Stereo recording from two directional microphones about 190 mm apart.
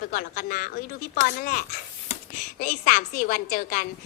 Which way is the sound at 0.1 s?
45° left (ahead or behind).